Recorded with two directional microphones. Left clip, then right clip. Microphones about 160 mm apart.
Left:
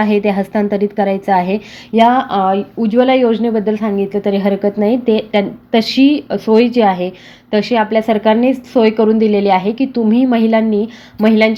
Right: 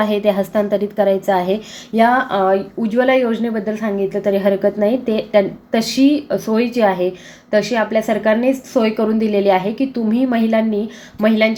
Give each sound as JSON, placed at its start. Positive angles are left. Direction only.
{"t": 0.0, "sound": "a woman's voice", "side_deg": 35}